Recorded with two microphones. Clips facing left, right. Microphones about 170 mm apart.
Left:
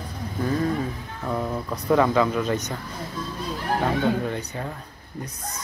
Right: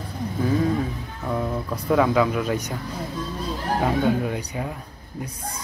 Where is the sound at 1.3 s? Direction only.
Centre (ahead or behind).